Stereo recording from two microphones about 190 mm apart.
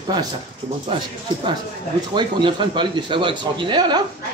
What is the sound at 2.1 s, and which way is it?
A man's voice, 25° right (ahead or behind).